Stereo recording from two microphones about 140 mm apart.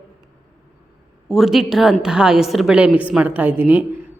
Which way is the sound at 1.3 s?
Centre (ahead or behind).